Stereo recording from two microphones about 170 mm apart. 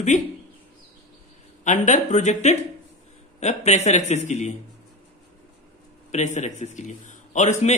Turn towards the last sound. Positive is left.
turn(degrees=45)  # may be behind; listen again after turning